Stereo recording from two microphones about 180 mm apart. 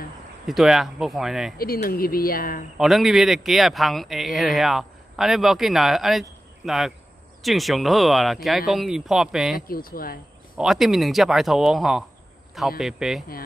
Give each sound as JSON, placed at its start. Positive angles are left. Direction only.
{"t": 0.5, "sound": "speech", "side_deg": 0}
{"t": 1.6, "sound": "speech", "side_deg": 55}
{"t": 2.8, "sound": "speech", "side_deg": 0}
{"t": 9.7, "sound": "speech", "side_deg": 55}
{"t": 10.6, "sound": "speech", "side_deg": 0}